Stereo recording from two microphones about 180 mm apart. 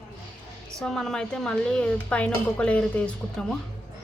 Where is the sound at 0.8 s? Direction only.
Centre (ahead or behind).